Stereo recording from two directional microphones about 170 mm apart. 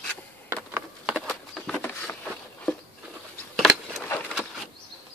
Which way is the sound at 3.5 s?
Centre (ahead or behind).